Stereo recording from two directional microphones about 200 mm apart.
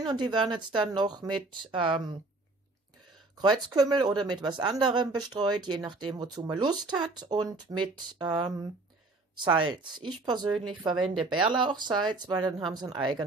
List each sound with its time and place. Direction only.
0.0 s speech: 20° right (ahead or behind)
3.3 s speech: 20° right (ahead or behind)